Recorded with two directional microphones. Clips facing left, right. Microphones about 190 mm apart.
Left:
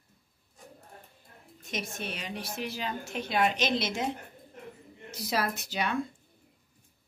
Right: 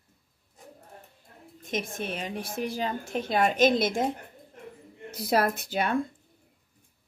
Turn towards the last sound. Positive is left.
turn(degrees=-55)  # may be behind; listen again after turning